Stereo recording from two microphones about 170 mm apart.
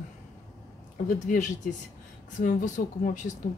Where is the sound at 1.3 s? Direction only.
50° left (ahead or behind).